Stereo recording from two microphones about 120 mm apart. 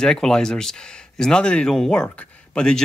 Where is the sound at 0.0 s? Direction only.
5° left (ahead or behind).